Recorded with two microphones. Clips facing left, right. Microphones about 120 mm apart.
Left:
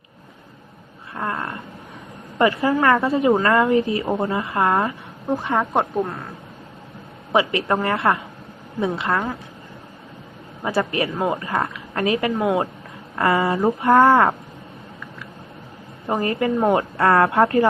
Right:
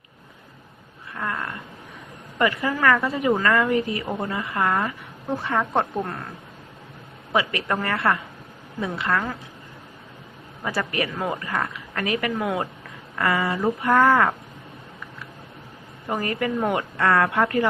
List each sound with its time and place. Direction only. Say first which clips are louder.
1.1 s a sound: left 3 dB; 30° left (ahead or behind)
2.4 s a woman's voice: left 4 dB; 30° left (ahead or behind); by 6.2 s 10° left (ahead or behind)
7.3 s a woman's voice: left 4 dB; 25° left (ahead or behind)
10.6 s a woman's voice: left 4 dB; 25° left (ahead or behind)
16.0 s a woman's voice: left 4 dB; 25° left (ahead or behind)